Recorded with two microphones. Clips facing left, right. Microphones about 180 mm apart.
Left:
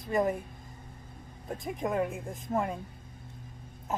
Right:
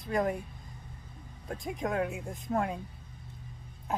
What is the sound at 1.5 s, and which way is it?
Speech, centre (ahead or behind).